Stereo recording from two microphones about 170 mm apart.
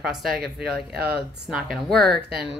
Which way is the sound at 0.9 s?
70° right (ahead or behind).